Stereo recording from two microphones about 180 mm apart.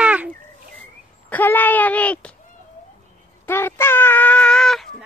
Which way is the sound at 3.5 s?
15° left (ahead or behind).